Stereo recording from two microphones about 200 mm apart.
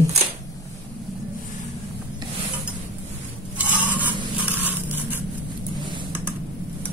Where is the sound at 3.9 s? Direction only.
10° right (ahead or behind).